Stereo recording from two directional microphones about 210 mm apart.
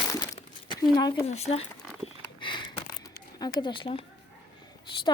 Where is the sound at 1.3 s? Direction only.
30° left (ahead or behind).